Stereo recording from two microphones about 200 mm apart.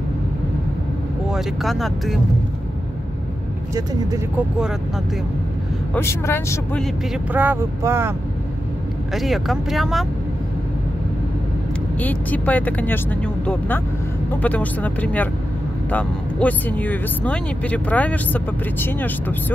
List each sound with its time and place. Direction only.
1.3 s speech: centre (ahead or behind)
3.7 s speech: 15° right (ahead or behind)
5.9 s speech: 10° left (ahead or behind)
7.3 s speech: 10° right (ahead or behind)
9.1 s speech: centre (ahead or behind)
12.0 s speech: 10° left (ahead or behind)